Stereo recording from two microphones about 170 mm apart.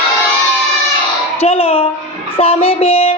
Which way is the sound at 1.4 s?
35° left (ahead or behind).